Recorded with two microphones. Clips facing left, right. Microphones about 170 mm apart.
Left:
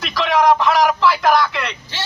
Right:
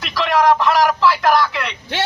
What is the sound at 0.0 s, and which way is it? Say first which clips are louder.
A man's voice: even; centre (ahead or behind).